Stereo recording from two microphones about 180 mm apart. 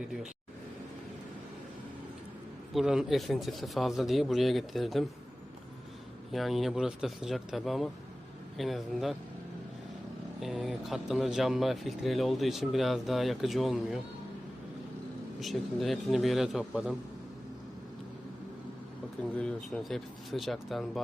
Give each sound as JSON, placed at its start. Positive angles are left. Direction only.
{"t": 2.7, "sound": "speech", "side_deg": -5}
{"t": 6.3, "sound": "speech", "side_deg": 0}
{"t": 10.4, "sound": "speech", "side_deg": -5}
{"t": 15.4, "sound": "speech", "side_deg": 0}
{"t": 19.2, "sound": "speech", "side_deg": 5}